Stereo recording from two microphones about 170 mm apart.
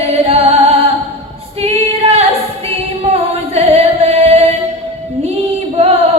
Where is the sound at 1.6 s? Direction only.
35° right (ahead or behind).